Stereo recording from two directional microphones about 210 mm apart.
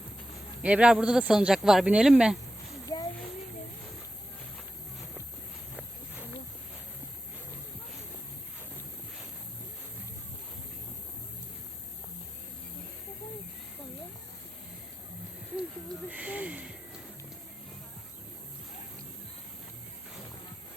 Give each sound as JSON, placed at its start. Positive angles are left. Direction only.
{"t": 0.6, "sound": "speech", "side_deg": -5}
{"t": 2.8, "sound": "a sound", "side_deg": 20}
{"t": 16.0, "sound": "snort", "side_deg": -5}